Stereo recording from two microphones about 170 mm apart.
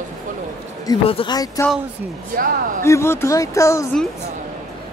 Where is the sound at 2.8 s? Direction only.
15° left (ahead or behind).